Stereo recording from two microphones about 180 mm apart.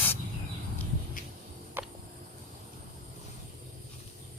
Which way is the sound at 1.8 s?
10° right (ahead or behind).